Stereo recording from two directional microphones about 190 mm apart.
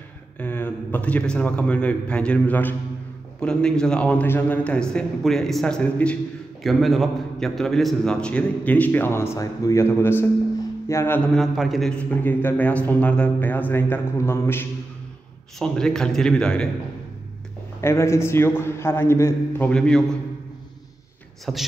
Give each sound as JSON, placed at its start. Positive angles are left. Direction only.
{"t": 0.4, "sound": "a man's voice", "side_deg": 10}
{"t": 11.3, "sound": "a man's voice", "side_deg": 0}
{"t": 17.7, "sound": "a man's voice", "side_deg": 15}
{"t": 21.5, "sound": "a man's voice", "side_deg": 0}